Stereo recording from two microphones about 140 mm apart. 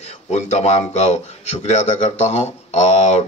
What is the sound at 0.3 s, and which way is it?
A man's voice, 55° left (ahead or behind).